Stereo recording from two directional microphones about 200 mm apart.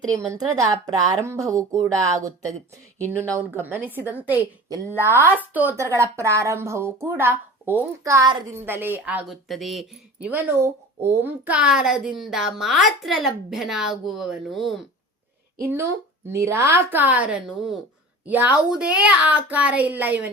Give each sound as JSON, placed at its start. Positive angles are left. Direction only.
{"t": 0.3, "sound": "speech", "side_deg": -20}
{"t": 15.6, "sound": "speech", "side_deg": -10}